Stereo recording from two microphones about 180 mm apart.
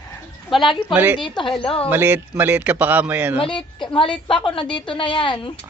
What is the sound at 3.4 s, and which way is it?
A woman's voice, 25° left (ahead or behind).